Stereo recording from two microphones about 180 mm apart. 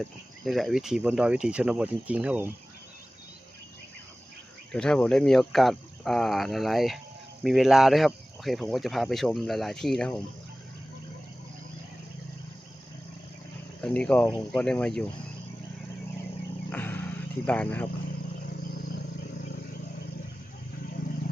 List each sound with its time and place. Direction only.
0.0 s speech: centre (ahead or behind)
4.7 s speech: 5° left (ahead or behind)
13.8 s speech: 5° left (ahead or behind)
16.6 s wild animals: 10° left (ahead or behind)
17.4 s speech: 10° left (ahead or behind)